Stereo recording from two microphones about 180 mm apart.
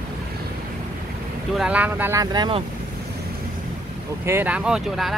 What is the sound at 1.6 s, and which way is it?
Speech, 5° right (ahead or behind).